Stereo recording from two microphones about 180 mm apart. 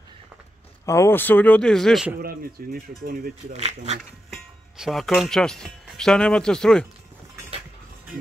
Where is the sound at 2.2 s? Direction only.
55° right (ahead or behind).